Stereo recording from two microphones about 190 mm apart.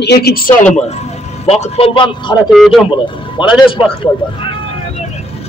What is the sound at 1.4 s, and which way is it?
Speech, 30° left (ahead or behind).